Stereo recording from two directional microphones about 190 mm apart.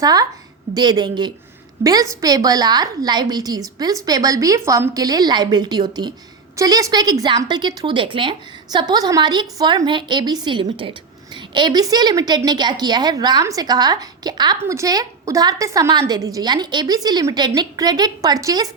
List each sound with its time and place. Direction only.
0.0 s a woman's voice: 20° right (ahead or behind)